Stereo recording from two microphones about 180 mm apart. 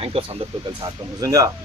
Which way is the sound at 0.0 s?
35° right (ahead or behind).